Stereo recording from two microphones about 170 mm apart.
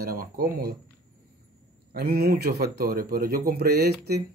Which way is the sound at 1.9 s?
65° right (ahead or behind).